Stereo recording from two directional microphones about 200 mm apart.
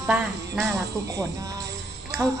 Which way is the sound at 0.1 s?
Centre (ahead or behind).